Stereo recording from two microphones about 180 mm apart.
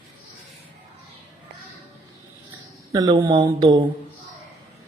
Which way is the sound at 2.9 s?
20° right (ahead or behind).